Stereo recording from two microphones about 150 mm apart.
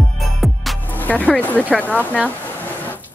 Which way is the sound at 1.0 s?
10° left (ahead or behind).